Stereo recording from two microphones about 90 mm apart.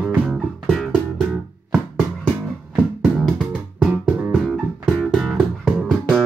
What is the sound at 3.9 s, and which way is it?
Music, 15° right (ahead or behind).